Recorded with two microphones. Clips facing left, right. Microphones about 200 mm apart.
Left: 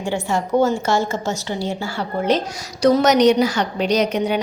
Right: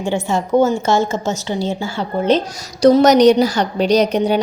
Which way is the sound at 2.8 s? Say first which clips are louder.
Right 4 dB; 35° right (ahead or behind).